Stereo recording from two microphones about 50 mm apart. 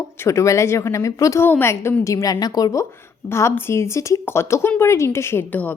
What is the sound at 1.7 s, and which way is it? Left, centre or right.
Speech, left.